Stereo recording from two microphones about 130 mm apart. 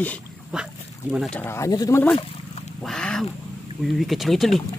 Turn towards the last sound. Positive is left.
turn(degrees=0)  # may be behind; listen again after turning